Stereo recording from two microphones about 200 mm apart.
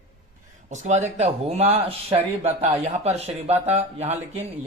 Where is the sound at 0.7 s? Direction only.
35° right (ahead or behind).